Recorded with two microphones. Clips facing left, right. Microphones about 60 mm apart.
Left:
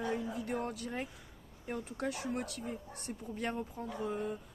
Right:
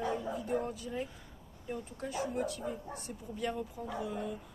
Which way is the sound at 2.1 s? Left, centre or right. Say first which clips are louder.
Right 6 dB; left.